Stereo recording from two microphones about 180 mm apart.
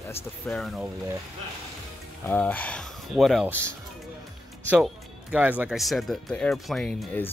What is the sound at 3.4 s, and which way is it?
Speech, 10° right (ahead or behind).